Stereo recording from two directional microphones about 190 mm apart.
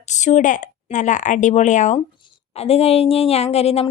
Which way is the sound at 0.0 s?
40° left (ahead or behind).